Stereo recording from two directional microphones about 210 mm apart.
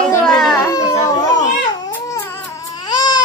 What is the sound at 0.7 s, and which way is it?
Speech, 15° left (ahead or behind).